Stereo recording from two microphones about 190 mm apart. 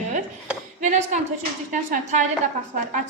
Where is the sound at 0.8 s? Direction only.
40° right (ahead or behind).